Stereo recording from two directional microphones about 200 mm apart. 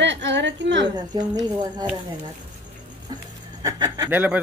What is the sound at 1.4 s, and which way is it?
Speech, 20° right (ahead or behind).